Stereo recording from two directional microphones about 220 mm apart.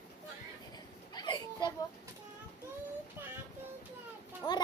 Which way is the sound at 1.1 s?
20° left (ahead or behind).